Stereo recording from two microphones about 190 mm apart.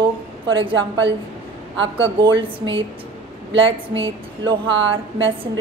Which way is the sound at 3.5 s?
30° right (ahead or behind).